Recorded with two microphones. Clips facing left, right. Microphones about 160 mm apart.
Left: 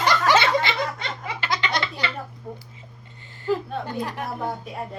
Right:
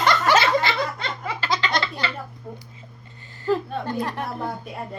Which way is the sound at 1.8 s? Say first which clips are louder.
Right 1 dB; 20° left (ahead or behind).